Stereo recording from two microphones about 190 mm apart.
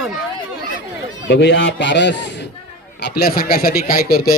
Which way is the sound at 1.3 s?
65° left (ahead or behind).